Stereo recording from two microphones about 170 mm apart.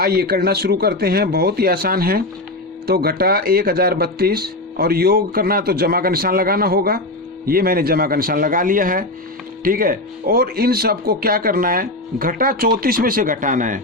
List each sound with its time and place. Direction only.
0.0 s speech: 65° right (ahead or behind)